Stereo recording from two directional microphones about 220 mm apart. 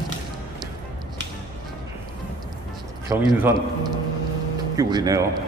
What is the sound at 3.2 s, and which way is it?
A man's voice, 5° right (ahead or behind).